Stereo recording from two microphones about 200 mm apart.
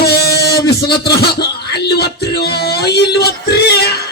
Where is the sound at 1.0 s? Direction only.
55° left (ahead or behind).